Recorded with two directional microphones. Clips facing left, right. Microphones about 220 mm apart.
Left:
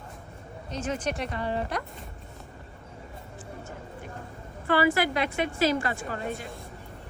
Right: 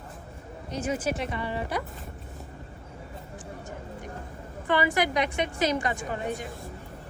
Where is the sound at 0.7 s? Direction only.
10° right (ahead or behind).